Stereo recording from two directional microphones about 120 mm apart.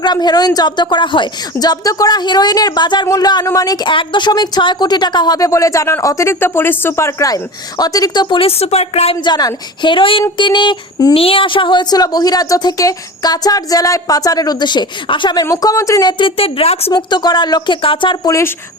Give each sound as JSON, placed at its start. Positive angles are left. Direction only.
{"t": 0.0, "sound": "speech", "side_deg": 35}
{"t": 9.1, "sound": "speech", "side_deg": 35}
{"t": 16.9, "sound": "speech", "side_deg": 35}
{"t": 18.3, "sound": "speech", "side_deg": 25}